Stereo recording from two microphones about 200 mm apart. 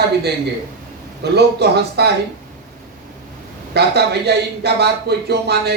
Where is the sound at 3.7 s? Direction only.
55° right (ahead or behind).